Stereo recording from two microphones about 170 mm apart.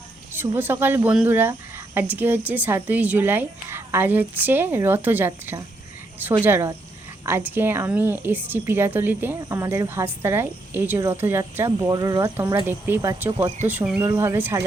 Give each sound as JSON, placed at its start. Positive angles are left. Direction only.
{"t": 0.3, "sound": "a woman's voice", "side_deg": -10}